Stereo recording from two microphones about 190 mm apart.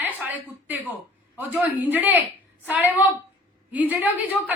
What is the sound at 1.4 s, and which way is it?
Speech, 10° right (ahead or behind).